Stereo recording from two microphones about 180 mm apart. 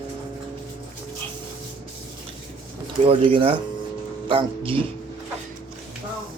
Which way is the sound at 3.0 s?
30° right (ahead or behind).